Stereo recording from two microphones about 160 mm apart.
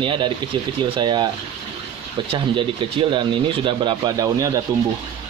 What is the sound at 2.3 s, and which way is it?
Speech, 35° right (ahead or behind).